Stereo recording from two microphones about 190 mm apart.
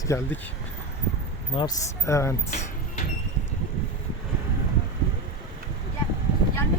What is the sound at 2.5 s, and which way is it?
Vehicle, 40° left (ahead or behind).